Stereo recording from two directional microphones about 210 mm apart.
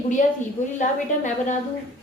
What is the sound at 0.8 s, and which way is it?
Speech, 35° left (ahead or behind).